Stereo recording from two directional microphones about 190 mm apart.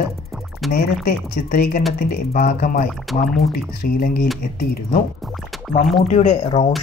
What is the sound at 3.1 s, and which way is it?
Speech, centre (ahead or behind).